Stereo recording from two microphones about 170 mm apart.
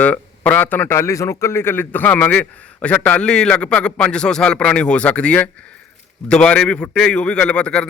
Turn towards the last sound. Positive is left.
turn(degrees=5)  # may be behind; listen again after turning